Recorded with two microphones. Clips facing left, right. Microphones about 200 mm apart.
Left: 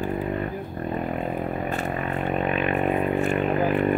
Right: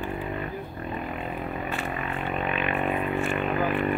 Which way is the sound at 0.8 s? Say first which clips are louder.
Left 7 dB; 40° left (ahead or behind).